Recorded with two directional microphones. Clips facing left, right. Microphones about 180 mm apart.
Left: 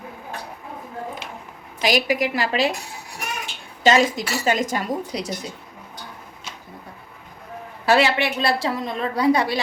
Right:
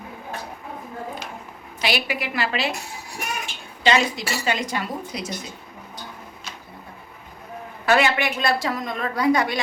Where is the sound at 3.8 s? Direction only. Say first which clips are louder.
Left 3 dB; 45° left (ahead or behind).